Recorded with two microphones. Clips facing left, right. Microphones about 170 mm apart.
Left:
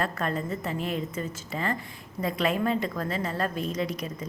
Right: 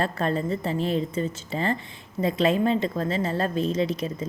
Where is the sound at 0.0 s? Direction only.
30° right (ahead or behind).